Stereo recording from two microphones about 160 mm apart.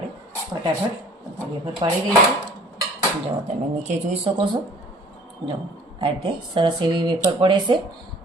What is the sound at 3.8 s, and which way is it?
Speech, 50° right (ahead or behind).